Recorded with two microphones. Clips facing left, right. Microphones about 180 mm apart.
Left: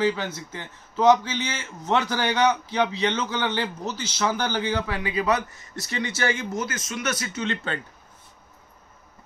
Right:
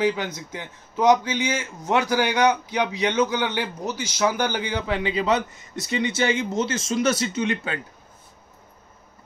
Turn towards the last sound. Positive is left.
turn(degrees=-10)  # may be behind; listen again after turning